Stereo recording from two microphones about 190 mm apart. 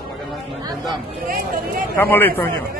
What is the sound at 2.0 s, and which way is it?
Speech, 10° left (ahead or behind).